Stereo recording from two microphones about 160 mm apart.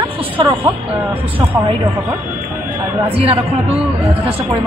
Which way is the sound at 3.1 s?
35° right (ahead or behind).